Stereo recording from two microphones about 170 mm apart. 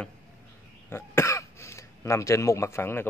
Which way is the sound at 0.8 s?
15° left (ahead or behind).